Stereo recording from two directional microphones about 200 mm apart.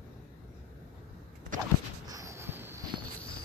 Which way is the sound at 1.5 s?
40° right (ahead or behind).